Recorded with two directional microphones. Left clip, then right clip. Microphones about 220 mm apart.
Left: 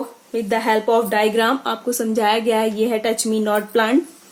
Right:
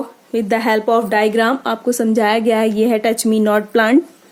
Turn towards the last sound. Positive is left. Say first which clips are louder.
# right 4 dB
turn(degrees=-45)  # may be behind; listen again after turning